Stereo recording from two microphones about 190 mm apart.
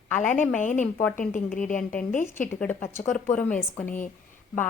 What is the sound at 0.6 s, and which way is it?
Speech, 40° left (ahead or behind).